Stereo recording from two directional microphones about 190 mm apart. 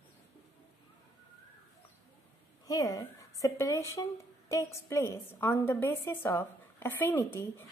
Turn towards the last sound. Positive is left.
turn(degrees=10)  # may be behind; listen again after turning